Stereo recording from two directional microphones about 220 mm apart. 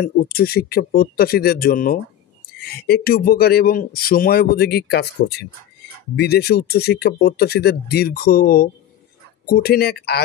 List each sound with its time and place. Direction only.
0.0 s speech: 45° left (ahead or behind)